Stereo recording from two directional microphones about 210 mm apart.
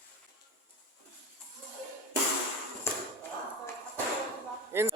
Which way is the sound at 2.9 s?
10° left (ahead or behind).